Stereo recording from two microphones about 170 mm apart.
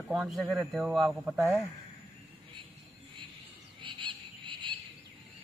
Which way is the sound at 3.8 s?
30° right (ahead or behind).